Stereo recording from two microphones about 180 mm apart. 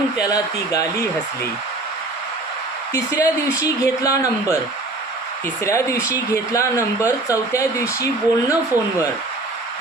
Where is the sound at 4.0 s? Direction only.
15° left (ahead or behind).